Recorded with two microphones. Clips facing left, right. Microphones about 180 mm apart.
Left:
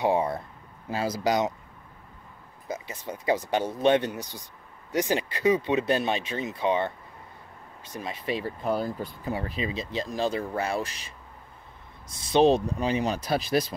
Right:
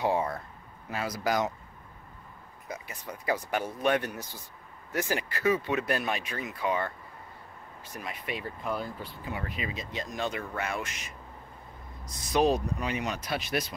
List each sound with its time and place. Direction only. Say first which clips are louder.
0.0 s speech: left 4 dB; 20° left (ahead or behind)
0.8 s speech: left 4 dB; 30° left (ahead or behind)
2.7 s speech: left 5 dB; 25° left (ahead or behind)